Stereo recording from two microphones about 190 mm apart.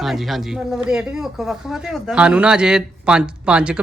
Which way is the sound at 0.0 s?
Centre (ahead or behind).